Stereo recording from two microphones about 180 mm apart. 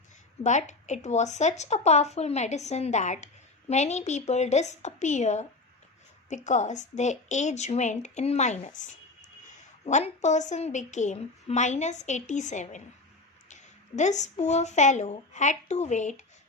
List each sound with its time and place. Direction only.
0.4 s a woman's voice: 40° left (ahead or behind)